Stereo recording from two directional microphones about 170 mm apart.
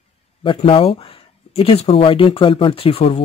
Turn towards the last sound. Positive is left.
turn(degrees=35)  # may be behind; listen again after turning